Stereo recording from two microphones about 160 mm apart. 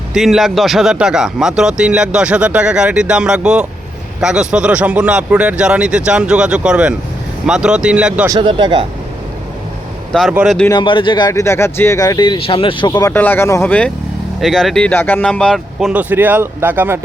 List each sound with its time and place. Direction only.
0.1 s speech: centre (ahead or behind)
8.3 s speech: 30° right (ahead or behind)
10.1 s speech: centre (ahead or behind)
10.7 s speech: 30° left (ahead or behind)
13.1 s speech: 10° left (ahead or behind)
16.0 s speech: 10° right (ahead or behind)